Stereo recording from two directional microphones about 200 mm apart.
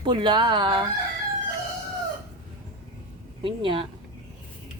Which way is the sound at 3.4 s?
25° right (ahead or behind).